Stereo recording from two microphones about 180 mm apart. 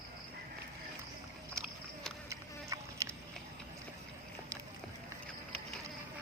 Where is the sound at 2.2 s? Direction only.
15° right (ahead or behind).